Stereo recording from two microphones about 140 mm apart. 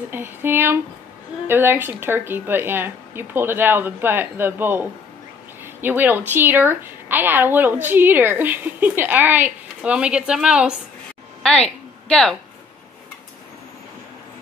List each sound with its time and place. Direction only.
0.1 s a woman's voice: 15° right (ahead or behind)
11.4 s speech: 5° left (ahead or behind)